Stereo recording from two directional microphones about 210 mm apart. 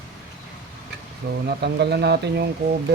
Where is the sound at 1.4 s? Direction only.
50° right (ahead or behind).